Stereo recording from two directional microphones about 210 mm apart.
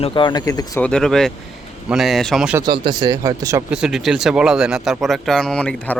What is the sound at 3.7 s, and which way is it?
Speech, 5° right (ahead or behind).